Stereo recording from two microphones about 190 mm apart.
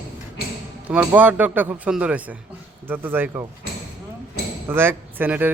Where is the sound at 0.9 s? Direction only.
10° right (ahead or behind).